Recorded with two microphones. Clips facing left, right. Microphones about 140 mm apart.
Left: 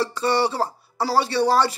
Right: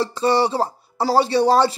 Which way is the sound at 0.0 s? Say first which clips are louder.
Right 3 dB; 20° right (ahead or behind).